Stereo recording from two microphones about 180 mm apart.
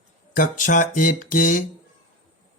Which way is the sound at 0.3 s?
45° left (ahead or behind).